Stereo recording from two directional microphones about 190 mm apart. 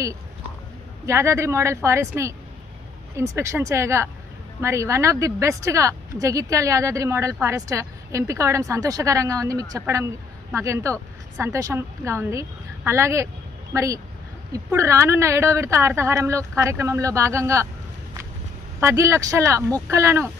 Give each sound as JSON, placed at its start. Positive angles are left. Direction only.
{"t": 1.0, "sound": "speech", "side_deg": -15}
{"t": 18.8, "sound": "speech", "side_deg": -15}